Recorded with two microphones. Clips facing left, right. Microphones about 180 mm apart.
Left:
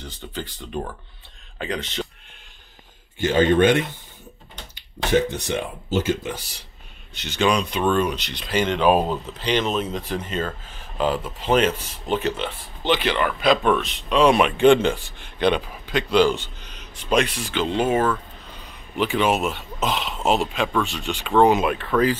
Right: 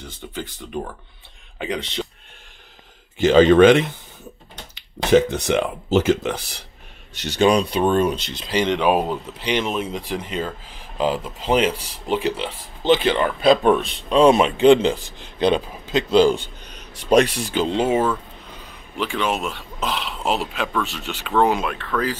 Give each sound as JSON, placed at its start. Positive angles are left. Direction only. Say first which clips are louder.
{"t": 1.6, "sound": "speech", "louder": "right 2 dB", "side_deg": -15}
{"t": 3.3, "sound": "speech", "louder": "right 5 dB", "side_deg": -90}
{"t": 5.1, "sound": "speech", "louder": "right 5 dB", "side_deg": -90}
{"t": 7.2, "sound": "speech", "louder": "right 4 dB", "side_deg": -35}
{"t": 12.9, "sound": "speech", "louder": "right 4 dB", "side_deg": -25}
{"t": 15.3, "sound": "a man's voice", "louder": "right 2 dB", "side_deg": -30}
{"t": 16.9, "sound": "speech", "louder": "right 5 dB", "side_deg": -40}
{"t": 17.7, "sound": "speech", "louder": "right 1 dB", "side_deg": -20}
{"t": 18.9, "sound": "speech", "louder": "left 3 dB", "side_deg": 5}
{"t": 21.6, "sound": "speech", "louder": "left 3 dB", "side_deg": 15}